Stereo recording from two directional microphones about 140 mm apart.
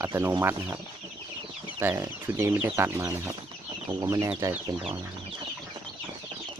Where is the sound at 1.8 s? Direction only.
20° right (ahead or behind).